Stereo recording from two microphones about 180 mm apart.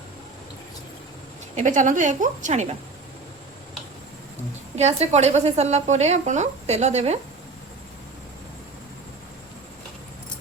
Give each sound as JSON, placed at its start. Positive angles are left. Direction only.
{"t": 1.5, "sound": "a woman's voice", "side_deg": -45}
{"t": 4.8, "sound": "speech", "side_deg": -35}